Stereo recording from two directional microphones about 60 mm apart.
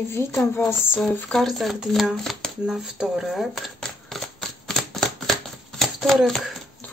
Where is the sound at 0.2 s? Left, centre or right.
Left.